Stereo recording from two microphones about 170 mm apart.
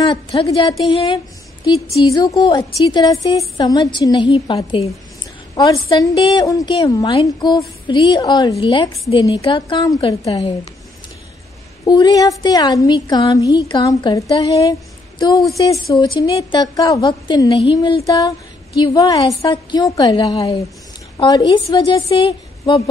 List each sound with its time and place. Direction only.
0.0 s a woman's voice: 30° left (ahead or behind)
1.0 s a sound: 25° left (ahead or behind)
2.0 s a woman's voice: 20° left (ahead or behind)
5.6 s a woman's voice: 20° left (ahead or behind)
11.8 s a woman's voice: 25° left (ahead or behind)